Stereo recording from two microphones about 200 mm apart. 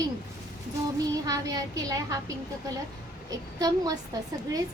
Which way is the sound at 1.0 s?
20° right (ahead or behind).